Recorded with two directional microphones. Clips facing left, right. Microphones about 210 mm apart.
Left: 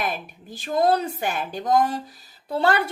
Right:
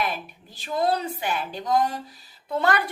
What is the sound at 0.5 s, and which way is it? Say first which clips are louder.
A woman's voice: left 4 dB; 45° left (ahead or behind).